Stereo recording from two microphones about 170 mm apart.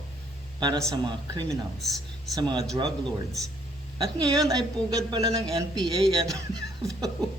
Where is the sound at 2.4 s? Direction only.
25° right (ahead or behind).